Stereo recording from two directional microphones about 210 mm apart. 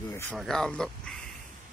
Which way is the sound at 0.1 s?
10° left (ahead or behind).